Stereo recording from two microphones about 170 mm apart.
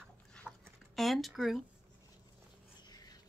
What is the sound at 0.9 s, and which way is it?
Speech, centre (ahead or behind).